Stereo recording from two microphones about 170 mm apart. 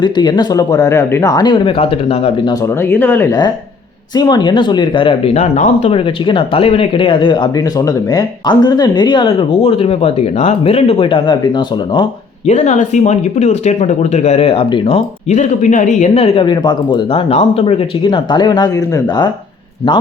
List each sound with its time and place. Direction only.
0.0 s speech: 25° left (ahead or behind)
2.8 s speech: 10° left (ahead or behind)
4.1 s speech: 25° left (ahead or behind)
12.5 s speech: 45° left (ahead or behind); by 19.3 s 25° left (ahead or behind)